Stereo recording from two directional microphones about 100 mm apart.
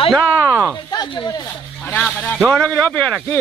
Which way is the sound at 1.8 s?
15° left (ahead or behind).